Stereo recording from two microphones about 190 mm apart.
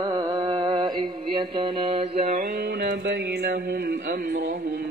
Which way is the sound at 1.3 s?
25° right (ahead or behind).